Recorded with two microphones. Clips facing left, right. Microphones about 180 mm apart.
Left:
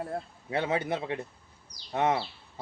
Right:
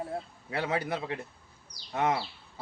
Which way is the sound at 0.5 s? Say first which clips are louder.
Left 2 dB; 25° left (ahead or behind).